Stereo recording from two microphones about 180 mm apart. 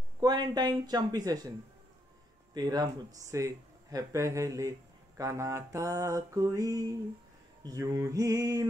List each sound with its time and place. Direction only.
0.2 s speech: 20° right (ahead or behind)
2.5 s speech: 20° right (ahead or behind)